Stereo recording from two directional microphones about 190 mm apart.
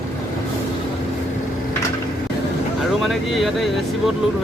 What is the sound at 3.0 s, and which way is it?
Speech, centre (ahead or behind).